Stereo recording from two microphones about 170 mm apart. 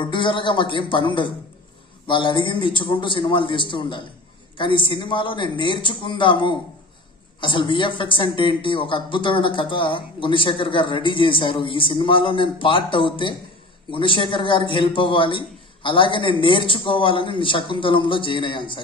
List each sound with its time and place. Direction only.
0.0 s speech: 30° left (ahead or behind)